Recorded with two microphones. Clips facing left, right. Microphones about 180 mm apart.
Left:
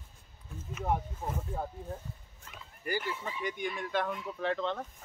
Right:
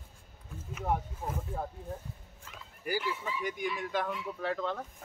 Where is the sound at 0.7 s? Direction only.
Centre (ahead or behind).